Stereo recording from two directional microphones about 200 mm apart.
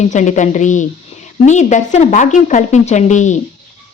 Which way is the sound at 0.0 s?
35° left (ahead or behind).